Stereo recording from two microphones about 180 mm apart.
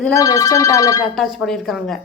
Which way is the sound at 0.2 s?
20° left (ahead or behind).